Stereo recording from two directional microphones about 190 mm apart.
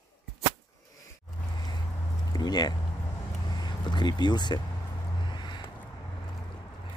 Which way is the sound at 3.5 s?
20° left (ahead or behind).